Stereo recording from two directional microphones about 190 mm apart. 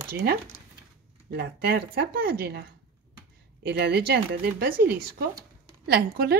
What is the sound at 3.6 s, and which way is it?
Speech, 55° right (ahead or behind).